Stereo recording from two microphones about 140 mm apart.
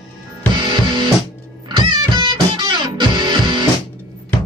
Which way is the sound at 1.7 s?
35° right (ahead or behind).